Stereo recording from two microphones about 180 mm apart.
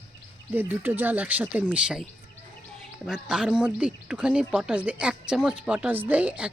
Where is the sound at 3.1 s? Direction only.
5° right (ahead or behind).